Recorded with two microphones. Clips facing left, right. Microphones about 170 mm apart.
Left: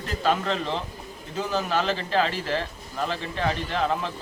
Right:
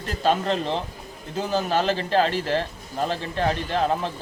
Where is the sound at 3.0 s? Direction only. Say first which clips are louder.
Right 3 dB; 40° right (ahead or behind).